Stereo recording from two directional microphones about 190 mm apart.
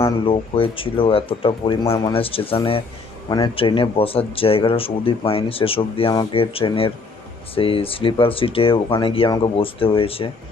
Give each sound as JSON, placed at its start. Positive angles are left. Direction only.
{"t": 0.3, "sound": "speech", "side_deg": 30}